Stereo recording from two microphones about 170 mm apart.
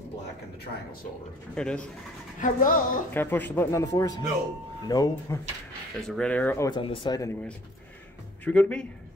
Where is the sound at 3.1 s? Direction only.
10° left (ahead or behind).